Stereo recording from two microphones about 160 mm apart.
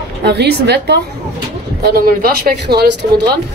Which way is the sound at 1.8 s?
70° right (ahead or behind).